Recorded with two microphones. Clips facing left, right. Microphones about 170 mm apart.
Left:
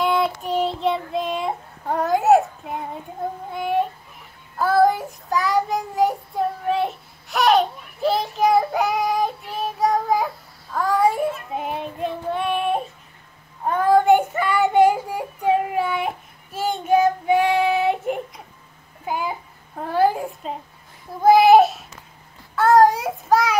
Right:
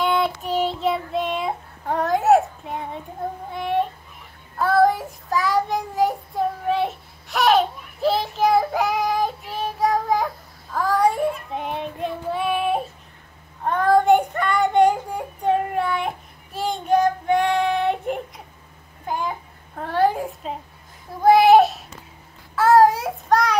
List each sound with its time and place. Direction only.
0.0 s child singing: centre (ahead or behind)
3.5 s a child's voice: centre (ahead or behind)
4.6 s child singing: centre (ahead or behind)
19.0 s a sound: 10° left (ahead or behind)
22.6 s child singing: centre (ahead or behind)